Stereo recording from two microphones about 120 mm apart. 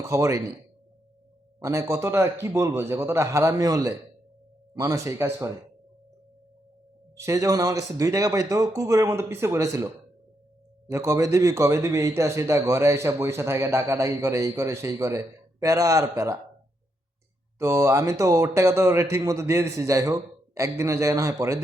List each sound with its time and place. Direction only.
0.0 s a man's voice: 25° right (ahead or behind)
1.5 s a man's voice: 25° right (ahead or behind)
7.2 s a man's voice: 25° right (ahead or behind)
17.6 s a man's voice: 25° right (ahead or behind)